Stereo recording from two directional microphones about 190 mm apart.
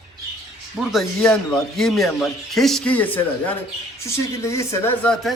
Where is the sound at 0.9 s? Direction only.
Centre (ahead or behind).